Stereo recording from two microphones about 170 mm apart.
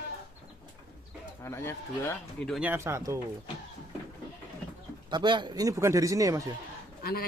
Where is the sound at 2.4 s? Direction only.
5° right (ahead or behind).